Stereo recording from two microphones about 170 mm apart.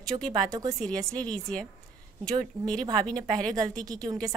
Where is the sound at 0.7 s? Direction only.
5° left (ahead or behind).